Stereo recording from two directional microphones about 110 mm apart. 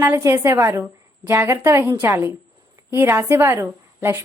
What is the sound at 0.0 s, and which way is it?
A woman's voice, 25° right (ahead or behind).